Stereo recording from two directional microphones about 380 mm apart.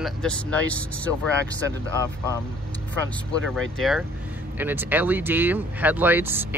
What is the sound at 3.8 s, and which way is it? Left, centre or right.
A man's voice, centre.